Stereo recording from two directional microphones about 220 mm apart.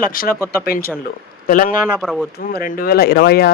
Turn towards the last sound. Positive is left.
turn(degrees=45)  # may be behind; listen again after turning